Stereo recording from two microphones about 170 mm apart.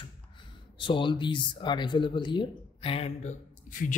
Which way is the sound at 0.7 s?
30° left (ahead or behind).